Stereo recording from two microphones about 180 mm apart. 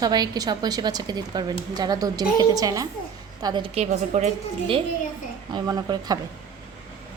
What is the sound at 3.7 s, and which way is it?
Speech, 40° right (ahead or behind).